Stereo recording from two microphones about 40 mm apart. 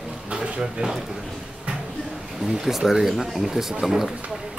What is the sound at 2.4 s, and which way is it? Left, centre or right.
Speech, centre.